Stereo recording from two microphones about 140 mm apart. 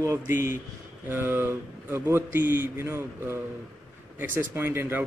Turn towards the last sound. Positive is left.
turn(degrees=-15)  # may be behind; listen again after turning